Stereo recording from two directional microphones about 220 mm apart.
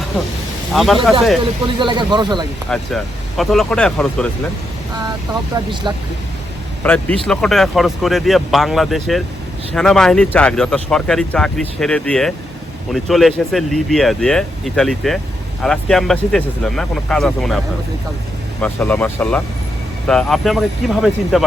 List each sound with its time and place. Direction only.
0.7 s speech: centre (ahead or behind)
1.6 s speech: 20° right (ahead or behind)
2.6 s speech: centre (ahead or behind)
5.5 s speech: 20° right (ahead or behind)
6.8 s speech: 5° left (ahead or behind)
18.6 s speech: 5° left (ahead or behind)